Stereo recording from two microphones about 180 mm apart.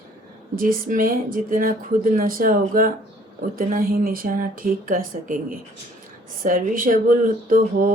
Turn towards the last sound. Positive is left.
turn(degrees=-50)  # may be behind; listen again after turning